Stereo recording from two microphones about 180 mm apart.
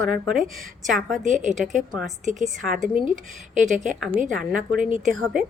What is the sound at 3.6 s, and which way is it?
Speech, 45° right (ahead or behind).